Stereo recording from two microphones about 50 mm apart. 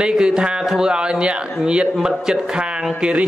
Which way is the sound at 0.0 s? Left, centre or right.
Centre.